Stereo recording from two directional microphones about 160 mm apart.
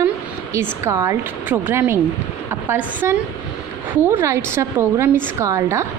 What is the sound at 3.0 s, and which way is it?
A woman's voice, 15° right (ahead or behind).